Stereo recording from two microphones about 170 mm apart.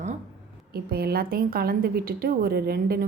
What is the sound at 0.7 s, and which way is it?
A woman's voice, 65° right (ahead or behind).